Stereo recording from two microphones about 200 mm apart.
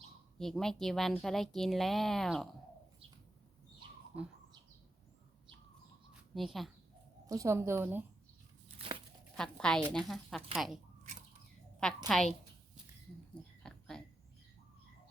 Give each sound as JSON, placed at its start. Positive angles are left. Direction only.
{"t": 0.3, "sound": "speech", "side_deg": 0}
{"t": 4.1, "sound": "a woman's voice", "side_deg": -5}
{"t": 6.3, "sound": "speech", "side_deg": 0}
{"t": 7.3, "sound": "a woman's voice", "side_deg": -15}
{"t": 8.8, "sound": "crumpling", "side_deg": -30}
{"t": 9.3, "sound": "a woman's voice", "side_deg": 5}
{"t": 12.0, "sound": "speech", "side_deg": 0}
{"t": 13.6, "sound": "oink", "side_deg": 5}